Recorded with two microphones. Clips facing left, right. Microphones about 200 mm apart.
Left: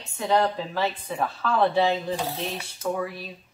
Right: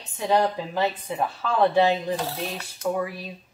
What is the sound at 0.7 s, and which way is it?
A woman's voice, 15° right (ahead or behind).